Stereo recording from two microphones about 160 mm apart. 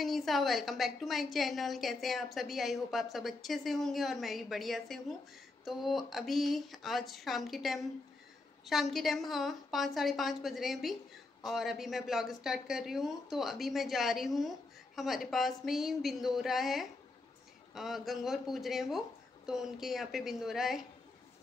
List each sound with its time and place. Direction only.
0.0 s a woman's voice: centre (ahead or behind)